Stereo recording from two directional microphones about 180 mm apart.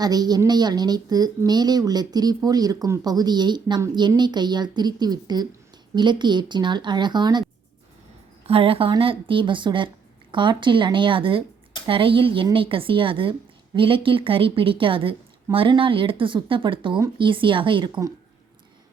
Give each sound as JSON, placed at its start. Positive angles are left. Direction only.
{"t": 0.0, "sound": "a woman's voice", "side_deg": -20}
{"t": 8.4, "sound": "a woman's voice", "side_deg": -30}